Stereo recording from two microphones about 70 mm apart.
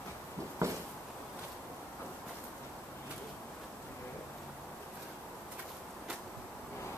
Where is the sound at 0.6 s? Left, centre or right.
Right.